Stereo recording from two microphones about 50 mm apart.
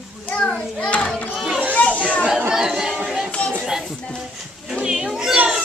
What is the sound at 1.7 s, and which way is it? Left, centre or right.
Children playing, left.